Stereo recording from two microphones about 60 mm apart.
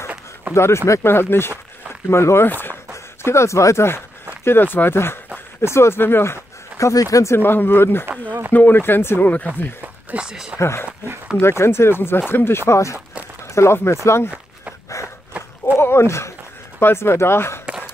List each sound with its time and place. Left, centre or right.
0.6 s speech: left
1.0 s speech: left
3.2 s speech: left
4.5 s speech: left
6.8 s speech: left
7.3 s speech: left
10.1 s speech: centre
10.6 s speech: left
12.7 s speech: left
15.3 s a sound: right
15.8 s speech: left